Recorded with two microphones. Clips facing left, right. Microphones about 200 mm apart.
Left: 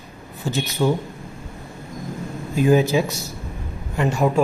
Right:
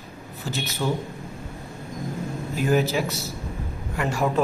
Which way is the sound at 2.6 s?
15° left (ahead or behind).